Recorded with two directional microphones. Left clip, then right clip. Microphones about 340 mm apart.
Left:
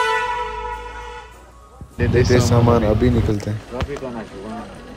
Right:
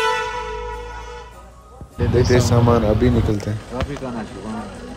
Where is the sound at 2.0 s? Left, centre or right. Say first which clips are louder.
Even; centre.